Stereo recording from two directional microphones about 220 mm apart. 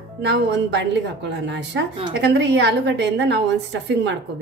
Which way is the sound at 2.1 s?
55° right (ahead or behind).